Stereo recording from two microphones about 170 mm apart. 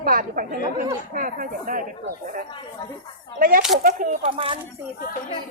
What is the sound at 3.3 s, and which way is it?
Speech, 55° right (ahead or behind).